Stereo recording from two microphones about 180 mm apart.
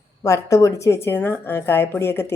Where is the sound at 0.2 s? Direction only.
15° left (ahead or behind).